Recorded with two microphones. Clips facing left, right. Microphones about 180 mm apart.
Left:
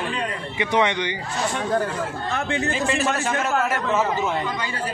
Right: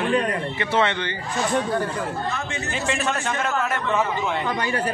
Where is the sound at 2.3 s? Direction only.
60° left (ahead or behind).